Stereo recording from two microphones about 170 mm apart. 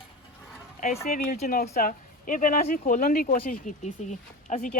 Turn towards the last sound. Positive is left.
turn(degrees=45)  # may be behind; listen again after turning